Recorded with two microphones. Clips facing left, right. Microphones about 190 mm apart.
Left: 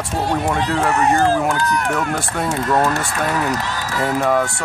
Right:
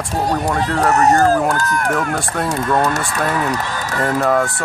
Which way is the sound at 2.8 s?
40° right (ahead or behind).